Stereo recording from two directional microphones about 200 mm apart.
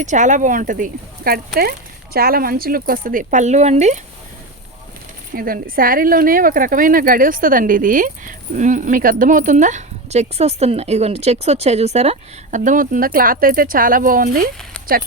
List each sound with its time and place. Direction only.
0.0 s speech: 35° right (ahead or behind)
5.3 s speech: 45° right (ahead or behind)